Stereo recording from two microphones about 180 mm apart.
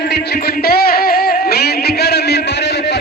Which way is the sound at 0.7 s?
60° left (ahead or behind).